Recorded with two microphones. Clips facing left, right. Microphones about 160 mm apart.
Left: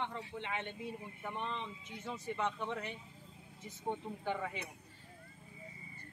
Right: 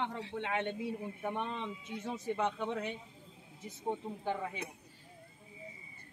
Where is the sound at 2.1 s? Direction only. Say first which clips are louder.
Right 3 dB; 35° right (ahead or behind).